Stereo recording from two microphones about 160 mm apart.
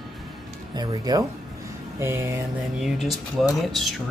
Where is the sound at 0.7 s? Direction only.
25° right (ahead or behind).